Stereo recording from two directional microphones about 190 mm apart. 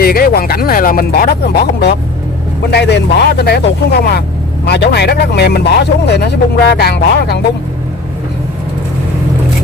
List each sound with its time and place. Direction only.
0.0 s speech: 50° left (ahead or behind)